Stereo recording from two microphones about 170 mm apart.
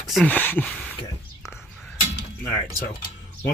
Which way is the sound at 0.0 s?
Centre (ahead or behind).